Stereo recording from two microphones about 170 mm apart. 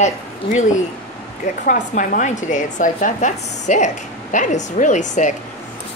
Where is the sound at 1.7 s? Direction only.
50° left (ahead or behind).